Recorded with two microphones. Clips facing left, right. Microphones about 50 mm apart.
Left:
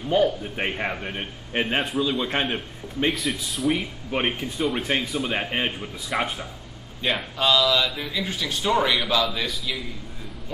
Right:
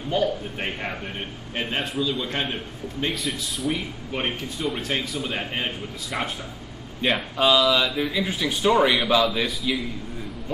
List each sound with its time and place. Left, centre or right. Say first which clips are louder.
0.1 s a man's voice: left 3 dB; centre
3.1 s speech: left 2 dB; centre
4.1 s a man's voice: left 3 dB; centre
7.0 s speech: right 2 dB; centre